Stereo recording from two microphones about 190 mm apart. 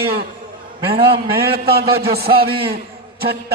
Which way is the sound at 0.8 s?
30° right (ahead or behind).